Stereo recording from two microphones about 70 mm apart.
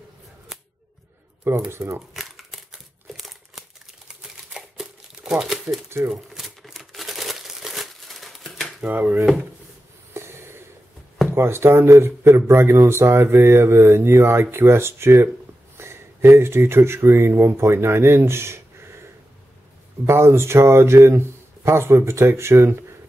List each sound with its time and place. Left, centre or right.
0.5 s scissors: centre
1.7 s speech: right
2.1 s a sound: centre
4.1 s crumpling: centre
8.8 s speech: right
10.1 s snort: right
11.3 s speech: right
20.1 s speech: right